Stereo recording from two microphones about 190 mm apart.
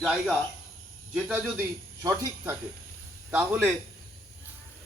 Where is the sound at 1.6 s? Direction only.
15° right (ahead or behind).